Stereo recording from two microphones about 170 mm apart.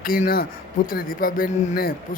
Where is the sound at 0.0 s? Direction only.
55° left (ahead or behind).